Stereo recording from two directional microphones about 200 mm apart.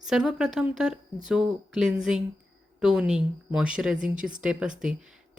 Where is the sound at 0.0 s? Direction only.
5° right (ahead or behind).